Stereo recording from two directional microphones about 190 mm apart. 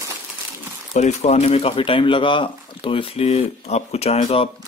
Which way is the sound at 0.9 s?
40° left (ahead or behind).